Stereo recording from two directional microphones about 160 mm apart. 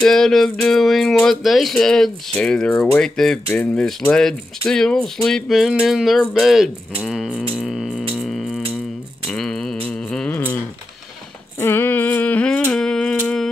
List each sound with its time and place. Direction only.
0.0 s speech: centre (ahead or behind)
7.5 s music: centre (ahead or behind)
9.3 s a sound: 5° left (ahead or behind)